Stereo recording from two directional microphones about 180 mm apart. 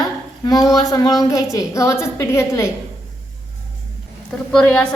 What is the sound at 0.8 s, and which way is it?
A woman's voice, 20° left (ahead or behind).